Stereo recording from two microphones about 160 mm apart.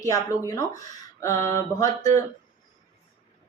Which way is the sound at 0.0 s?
20° left (ahead or behind).